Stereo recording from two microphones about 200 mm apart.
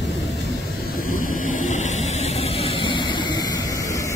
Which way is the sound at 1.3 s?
40° left (ahead or behind).